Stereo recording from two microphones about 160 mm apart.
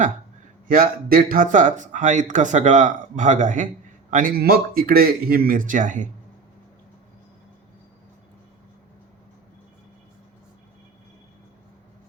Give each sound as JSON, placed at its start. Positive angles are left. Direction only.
{"t": 0.7, "sound": "speech", "side_deg": -65}